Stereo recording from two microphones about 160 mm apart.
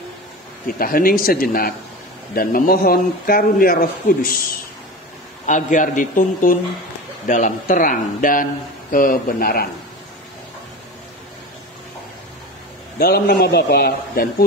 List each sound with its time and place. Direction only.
0.7 s speech: 65° left (ahead or behind)
5.5 s speech: 50° left (ahead or behind); by 9.7 s 70° left (ahead or behind)
13.0 s a man's voice: 75° left (ahead or behind)